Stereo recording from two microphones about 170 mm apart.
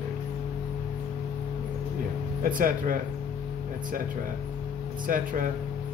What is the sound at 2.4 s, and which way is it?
Speech, 55° right (ahead or behind).